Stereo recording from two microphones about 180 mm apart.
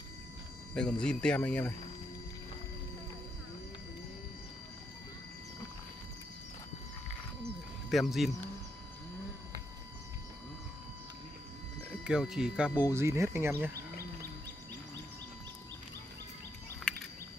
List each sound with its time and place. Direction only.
0.7 s speech: 5° left (ahead or behind)
7.9 s speech: centre (ahead or behind)
12.0 s speech: 5° right (ahead or behind)